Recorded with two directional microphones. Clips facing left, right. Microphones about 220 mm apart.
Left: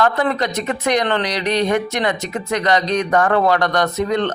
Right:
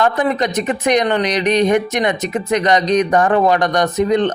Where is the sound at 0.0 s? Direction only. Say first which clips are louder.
Right 2 dB; 20° right (ahead or behind).